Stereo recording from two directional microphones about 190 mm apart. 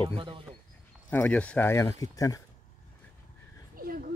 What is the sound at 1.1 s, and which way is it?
Speech, 10° left (ahead or behind).